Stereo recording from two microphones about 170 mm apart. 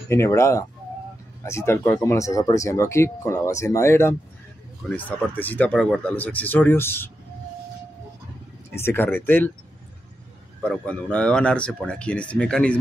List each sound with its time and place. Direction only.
0.1 s speech: 15° left (ahead or behind)
8.7 s speech: 15° left (ahead or behind)
10.6 s speech: 5° left (ahead or behind)